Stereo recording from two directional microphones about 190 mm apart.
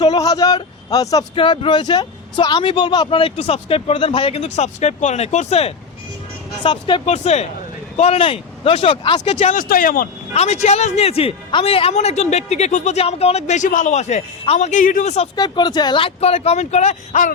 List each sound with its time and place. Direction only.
0.0 s speech: 20° left (ahead or behind)
7.1 s a man's voice: 35° left (ahead or behind)
10.3 s a man's voice: 35° left (ahead or behind)
15.4 s a man's voice: 20° left (ahead or behind); by 17.3 s 40° left (ahead or behind)